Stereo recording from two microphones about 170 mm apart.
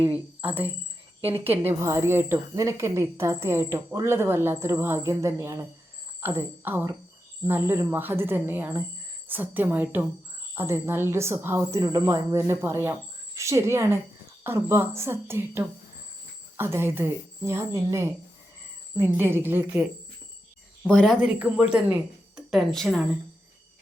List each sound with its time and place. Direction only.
0.0 s cricket: 10° right (ahead or behind)
1.2 s speech: 10° right (ahead or behind)
20.8 s speech: 5° left (ahead or behind)
21.2 s speech: 10° right (ahead or behind)